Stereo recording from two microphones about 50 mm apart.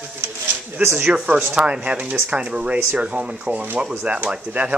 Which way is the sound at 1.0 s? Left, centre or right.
Right.